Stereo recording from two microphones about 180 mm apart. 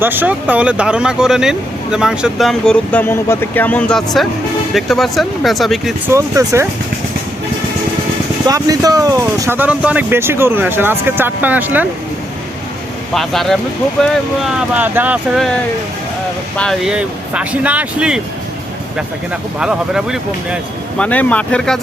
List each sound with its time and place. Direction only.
0.0 s speech: 10° right (ahead or behind)
6.1 s speech: 15° right (ahead or behind)
8.4 s speech: 20° right (ahead or behind)
13.1 s speech: centre (ahead or behind)
16.6 s speech: centre (ahead or behind)
19.5 s speech: 5° right (ahead or behind)
21.0 s speech: 5° left (ahead or behind)